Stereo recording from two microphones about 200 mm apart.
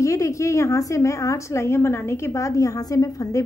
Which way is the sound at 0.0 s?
15° left (ahead or behind).